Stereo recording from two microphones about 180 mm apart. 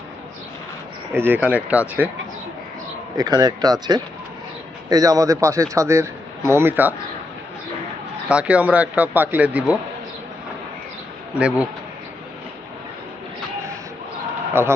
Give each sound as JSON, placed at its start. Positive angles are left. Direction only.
{"t": 1.1, "sound": "a man's voice", "side_deg": -10}
{"t": 3.2, "sound": "a man's voice", "side_deg": -20}
{"t": 8.3, "sound": "a man's voice", "side_deg": -5}
{"t": 11.3, "sound": "a man's voice", "side_deg": -5}
{"t": 14.5, "sound": "a man's voice", "side_deg": -15}